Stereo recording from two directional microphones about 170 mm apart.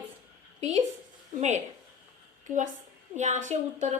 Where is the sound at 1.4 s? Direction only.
45° right (ahead or behind).